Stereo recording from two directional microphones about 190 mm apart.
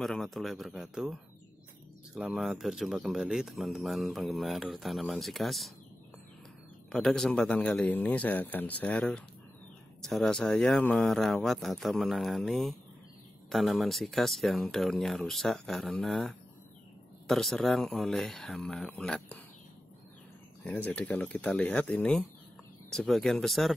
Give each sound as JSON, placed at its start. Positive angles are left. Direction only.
{"t": 0.0, "sound": "speech", "side_deg": 0}
{"t": 6.9, "sound": "a man's voice", "side_deg": 5}
{"t": 20.6, "sound": "a man's voice", "side_deg": 10}